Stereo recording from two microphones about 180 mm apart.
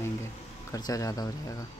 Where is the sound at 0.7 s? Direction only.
20° left (ahead or behind).